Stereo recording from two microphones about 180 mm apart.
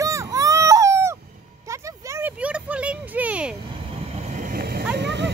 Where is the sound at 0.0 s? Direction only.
15° right (ahead or behind).